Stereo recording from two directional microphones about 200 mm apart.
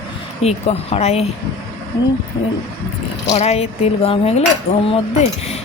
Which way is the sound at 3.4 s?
30° left (ahead or behind).